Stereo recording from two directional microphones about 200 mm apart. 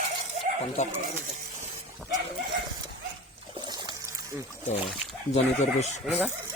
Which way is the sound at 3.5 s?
20° right (ahead or behind).